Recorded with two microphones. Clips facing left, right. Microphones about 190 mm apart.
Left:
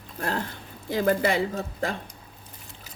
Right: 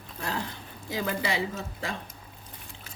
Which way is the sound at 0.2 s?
55° left (ahead or behind).